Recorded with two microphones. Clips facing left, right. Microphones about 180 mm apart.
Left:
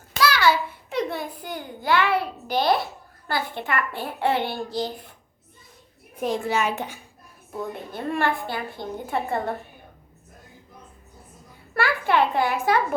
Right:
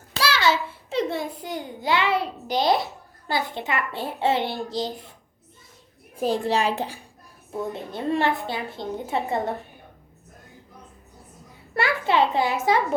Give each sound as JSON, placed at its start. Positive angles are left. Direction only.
{"t": 0.2, "sound": "a child's voice", "side_deg": -25}
{"t": 6.1, "sound": "a child's voice", "side_deg": -30}
{"t": 11.7, "sound": "a child's voice", "side_deg": -20}